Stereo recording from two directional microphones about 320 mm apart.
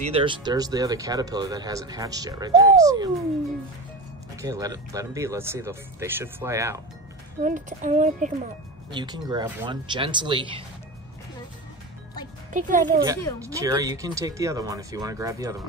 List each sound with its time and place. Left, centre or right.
0.0 s speech: centre
4.4 s speech: centre
7.4 s speech: right
8.9 s speech: centre
12.5 s speech: right
13.0 s speech: centre